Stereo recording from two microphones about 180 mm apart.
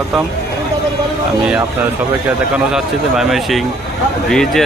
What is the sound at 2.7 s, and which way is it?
Speech, centre (ahead or behind).